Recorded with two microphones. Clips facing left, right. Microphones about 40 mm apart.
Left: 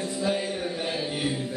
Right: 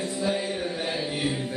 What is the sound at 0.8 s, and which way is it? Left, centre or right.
Chant, centre.